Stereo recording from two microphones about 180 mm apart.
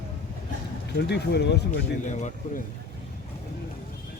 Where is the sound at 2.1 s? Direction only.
40° left (ahead or behind).